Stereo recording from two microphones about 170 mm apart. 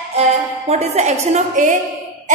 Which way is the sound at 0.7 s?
40° right (ahead or behind).